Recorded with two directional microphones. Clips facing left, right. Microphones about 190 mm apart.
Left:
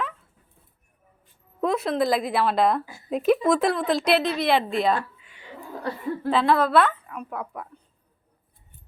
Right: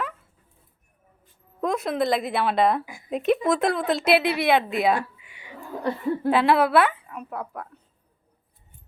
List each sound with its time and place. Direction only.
1.6 s a woman's voice: centre (ahead or behind)
5.5 s laughter: 20° right (ahead or behind)
6.3 s a woman's voice: 5° right (ahead or behind)